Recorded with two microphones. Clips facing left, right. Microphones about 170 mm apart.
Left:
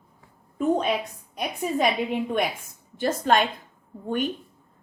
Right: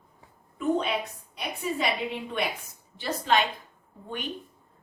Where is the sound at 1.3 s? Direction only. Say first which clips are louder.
Left 5 dB; 50° left (ahead or behind).